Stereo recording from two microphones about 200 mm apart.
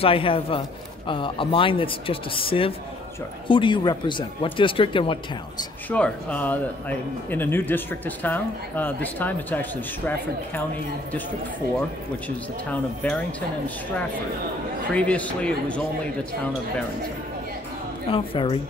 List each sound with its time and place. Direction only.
0.0 s speech: 25° left (ahead or behind)
5.9 s a man's voice: 5° left (ahead or behind)
12.6 s a man's voice: 5° left (ahead or behind)
15.0 s a man's voice: 5° left (ahead or behind)
18.1 s speech: 25° left (ahead or behind)